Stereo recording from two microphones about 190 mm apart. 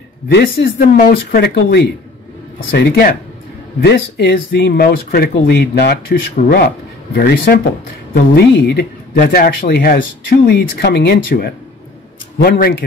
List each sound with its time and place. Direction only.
0.3 s speech: 60° left (ahead or behind)
7.2 s speech: 50° left (ahead or behind)